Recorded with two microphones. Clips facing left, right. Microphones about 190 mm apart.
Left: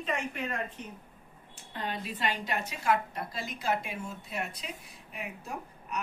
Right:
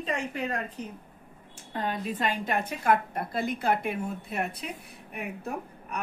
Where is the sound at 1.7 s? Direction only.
45° right (ahead or behind).